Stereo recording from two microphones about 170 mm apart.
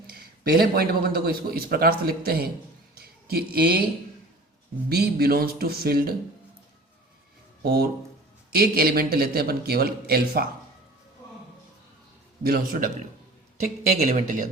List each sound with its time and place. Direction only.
0.1 s a man's voice: 65° right (ahead or behind)
2.9 s a sound: 65° right (ahead or behind)
4.9 s a man's voice: 70° right (ahead or behind)
7.6 s a man's voice: 65° right (ahead or behind)
12.4 s a man's voice: 60° right (ahead or behind)
14.1 s speech: 50° right (ahead or behind)